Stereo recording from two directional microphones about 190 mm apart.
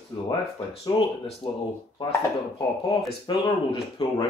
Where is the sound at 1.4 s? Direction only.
30° left (ahead or behind).